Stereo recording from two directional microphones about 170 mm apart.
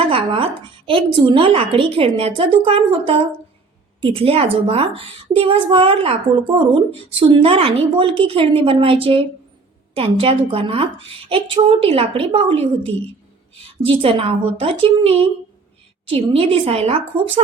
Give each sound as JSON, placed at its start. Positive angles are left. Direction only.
{"t": 0.0, "sound": "a child's voice", "side_deg": -30}